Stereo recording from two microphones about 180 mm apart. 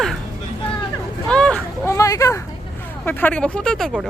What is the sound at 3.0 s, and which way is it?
Speech, 10° left (ahead or behind).